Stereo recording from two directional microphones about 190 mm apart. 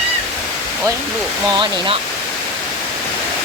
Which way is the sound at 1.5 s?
25° right (ahead or behind).